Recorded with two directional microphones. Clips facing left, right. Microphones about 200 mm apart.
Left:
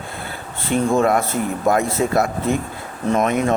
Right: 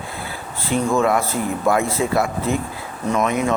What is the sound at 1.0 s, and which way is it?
A man's voice, 45° left (ahead or behind).